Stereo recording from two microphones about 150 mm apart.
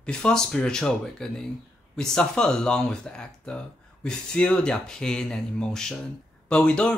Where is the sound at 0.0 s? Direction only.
5° left (ahead or behind).